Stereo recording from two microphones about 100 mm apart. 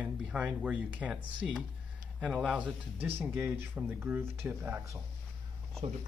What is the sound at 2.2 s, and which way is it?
Speech, 10° right (ahead or behind).